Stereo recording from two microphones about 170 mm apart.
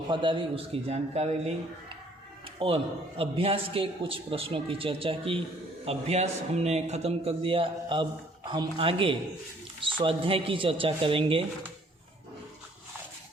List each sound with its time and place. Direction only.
0.1 s a man's voice: 30° right (ahead or behind)
2.6 s a man's voice: 35° right (ahead or behind)